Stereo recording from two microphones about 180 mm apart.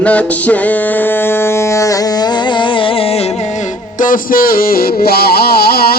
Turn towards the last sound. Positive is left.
turn(degrees=60)  # may be behind; listen again after turning